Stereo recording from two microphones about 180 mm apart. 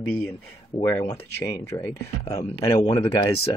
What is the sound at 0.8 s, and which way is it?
Speech, 15° left (ahead or behind).